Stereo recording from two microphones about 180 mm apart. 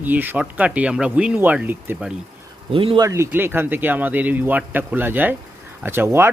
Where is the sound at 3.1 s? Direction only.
15° right (ahead or behind).